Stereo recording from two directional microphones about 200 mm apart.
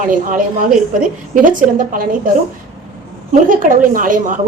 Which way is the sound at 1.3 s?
40° right (ahead or behind).